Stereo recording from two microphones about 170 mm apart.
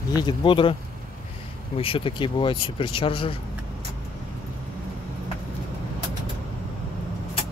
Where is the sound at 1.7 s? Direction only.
30° left (ahead or behind).